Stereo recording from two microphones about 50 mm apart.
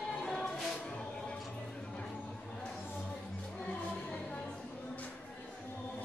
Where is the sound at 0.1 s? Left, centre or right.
Centre.